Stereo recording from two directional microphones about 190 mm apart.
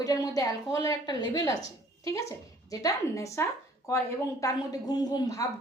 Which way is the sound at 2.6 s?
15° left (ahead or behind).